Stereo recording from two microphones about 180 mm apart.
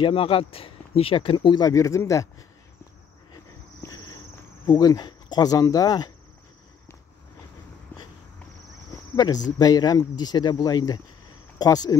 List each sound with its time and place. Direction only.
0.0 s speech: 30° left (ahead or behind)
3.8 s cricket: 20° left (ahead or behind)
4.6 s speech: 20° left (ahead or behind)
7.9 s walk: 10° left (ahead or behind)
9.1 s speech: 20° left (ahead or behind)